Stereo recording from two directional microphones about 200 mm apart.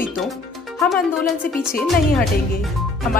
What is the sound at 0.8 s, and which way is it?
Speech, centre (ahead or behind).